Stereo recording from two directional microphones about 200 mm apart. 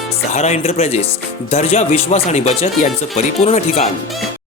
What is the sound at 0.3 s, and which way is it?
Speech, 35° left (ahead or behind).